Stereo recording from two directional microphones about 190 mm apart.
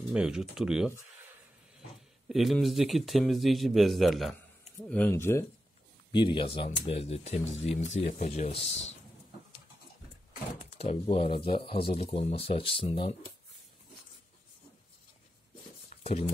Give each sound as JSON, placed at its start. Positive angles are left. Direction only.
{"t": 0.1, "sound": "speech", "side_deg": -5}
{"t": 2.2, "sound": "speech", "side_deg": 0}
{"t": 6.1, "sound": "speech", "side_deg": 25}
{"t": 10.8, "sound": "speech", "side_deg": 30}
{"t": 16.0, "sound": "a sound", "side_deg": 30}